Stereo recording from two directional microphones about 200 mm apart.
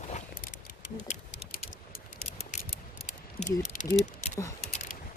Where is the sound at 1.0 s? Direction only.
35° left (ahead or behind).